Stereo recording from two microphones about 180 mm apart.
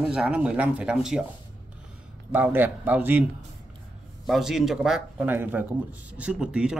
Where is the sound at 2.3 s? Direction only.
10° right (ahead or behind).